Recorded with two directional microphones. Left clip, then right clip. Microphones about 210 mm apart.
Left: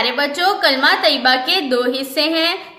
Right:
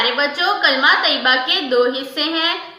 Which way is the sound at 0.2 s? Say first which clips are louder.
Left 1 dB; 50° left (ahead or behind).